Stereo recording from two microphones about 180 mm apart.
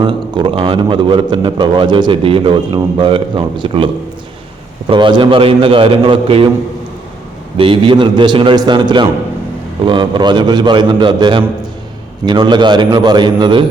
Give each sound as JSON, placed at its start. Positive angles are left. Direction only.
{"t": 0.0, "sound": "a man's voice", "side_deg": -25}
{"t": 4.9, "sound": "a man's voice", "side_deg": -25}
{"t": 7.5, "sound": "a man's voice", "side_deg": -30}